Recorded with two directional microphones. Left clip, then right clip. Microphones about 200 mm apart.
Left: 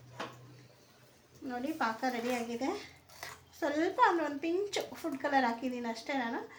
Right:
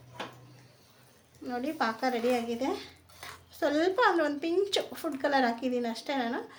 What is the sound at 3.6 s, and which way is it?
Speech, 50° right (ahead or behind).